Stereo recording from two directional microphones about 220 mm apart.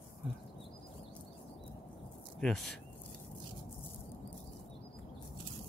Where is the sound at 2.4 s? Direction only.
Centre (ahead or behind).